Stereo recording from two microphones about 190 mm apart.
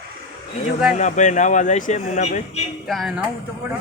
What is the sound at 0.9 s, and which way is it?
Speech, 40° left (ahead or behind).